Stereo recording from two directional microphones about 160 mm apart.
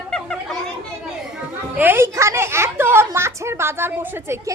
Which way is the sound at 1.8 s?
15° right (ahead or behind).